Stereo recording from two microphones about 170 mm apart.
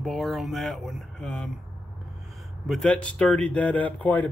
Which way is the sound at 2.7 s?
5° left (ahead or behind).